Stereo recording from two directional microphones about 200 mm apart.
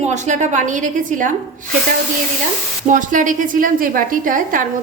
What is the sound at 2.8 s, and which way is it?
A woman's voice, 40° right (ahead or behind).